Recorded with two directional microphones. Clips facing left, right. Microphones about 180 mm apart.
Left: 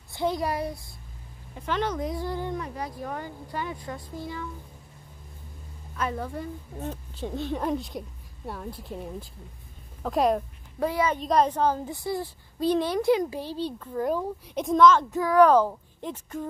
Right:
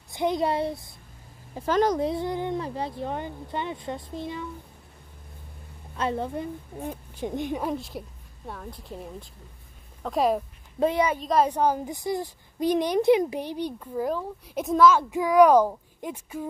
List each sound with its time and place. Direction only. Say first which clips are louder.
0.1 s a child's voice: right 2 dB; 20° right (ahead or behind)
1.5 s a child's voice: right 6 dB; 40° right (ahead or behind); by 4.5 s 20° right (ahead or behind)
5.9 s a woman's voice: right 3 dB; 25° right (ahead or behind); by 10.4 s centre (ahead or behind)
10.8 s a child's voice: right 3 dB; 20° right (ahead or behind)
11.1 s speech: even; centre (ahead or behind)
11.4 s a woman's voice: right 1 dB; 15° right (ahead or behind)